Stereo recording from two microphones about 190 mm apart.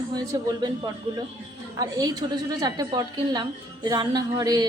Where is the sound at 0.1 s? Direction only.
20° right (ahead or behind).